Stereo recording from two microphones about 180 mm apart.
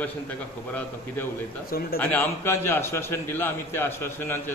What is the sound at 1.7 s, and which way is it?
Speech, 55° left (ahead or behind).